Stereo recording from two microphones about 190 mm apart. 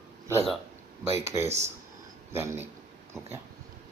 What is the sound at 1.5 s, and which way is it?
Speech, 35° right (ahead or behind).